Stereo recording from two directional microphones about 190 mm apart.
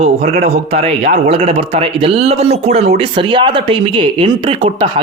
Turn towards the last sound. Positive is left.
turn(degrees=-30)  # may be behind; listen again after turning